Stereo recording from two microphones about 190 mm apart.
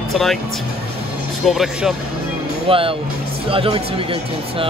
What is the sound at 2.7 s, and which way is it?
Speech, 30° right (ahead or behind).